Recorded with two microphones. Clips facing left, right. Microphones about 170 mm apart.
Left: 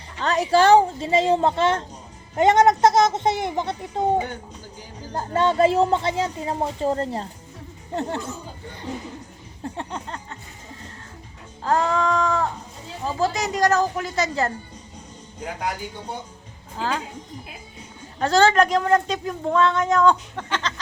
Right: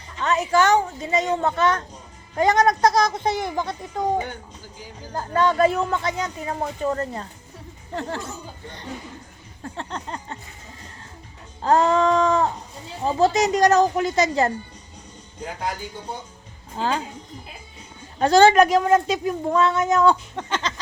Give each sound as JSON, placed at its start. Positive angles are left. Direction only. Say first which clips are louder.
{"t": 0.2, "sound": "speech", "louder": "left 1 dB", "side_deg": 35}
{"t": 9.9, "sound": "a sound", "louder": "even", "side_deg": 10}
{"t": 11.6, "sound": "a woman's voice", "louder": "right 3 dB", "side_deg": -25}
{"t": 16.7, "sound": "speech", "louder": "right 2 dB", "side_deg": -20}
{"t": 18.2, "sound": "speech", "louder": "right 3 dB", "side_deg": -15}